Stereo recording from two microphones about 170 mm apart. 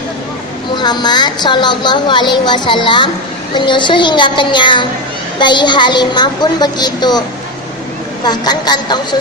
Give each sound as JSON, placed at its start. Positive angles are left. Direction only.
{"t": 0.8, "sound": "a woman's voice", "side_deg": 25}